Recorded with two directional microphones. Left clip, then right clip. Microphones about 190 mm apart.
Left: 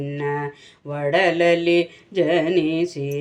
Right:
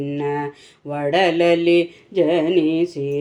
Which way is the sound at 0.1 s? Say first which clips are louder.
Right 1 dB; 15° right (ahead or behind).